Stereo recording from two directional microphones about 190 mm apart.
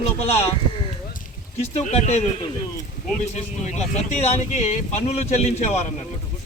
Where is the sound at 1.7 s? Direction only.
35° left (ahead or behind).